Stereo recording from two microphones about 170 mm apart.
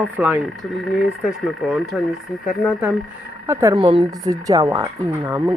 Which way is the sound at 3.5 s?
15° right (ahead or behind).